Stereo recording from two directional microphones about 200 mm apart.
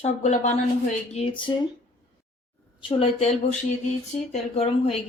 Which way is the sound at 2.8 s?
25° left (ahead or behind).